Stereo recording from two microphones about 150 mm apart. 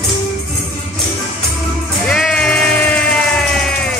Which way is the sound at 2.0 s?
5° left (ahead or behind).